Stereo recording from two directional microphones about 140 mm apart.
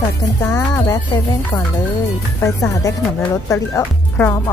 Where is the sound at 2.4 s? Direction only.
20° left (ahead or behind).